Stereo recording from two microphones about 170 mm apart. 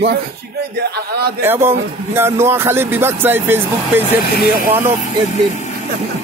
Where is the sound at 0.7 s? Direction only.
70° right (ahead or behind).